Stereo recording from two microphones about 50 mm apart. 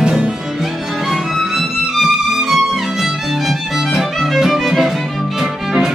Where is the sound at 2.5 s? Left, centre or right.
Centre.